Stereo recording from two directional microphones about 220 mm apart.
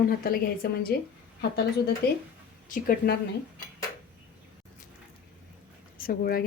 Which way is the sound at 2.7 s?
40° left (ahead or behind).